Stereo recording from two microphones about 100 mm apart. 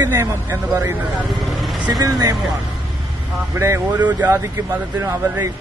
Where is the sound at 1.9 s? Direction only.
40° right (ahead or behind).